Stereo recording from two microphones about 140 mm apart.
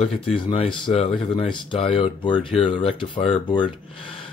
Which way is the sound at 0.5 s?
35° left (ahead or behind).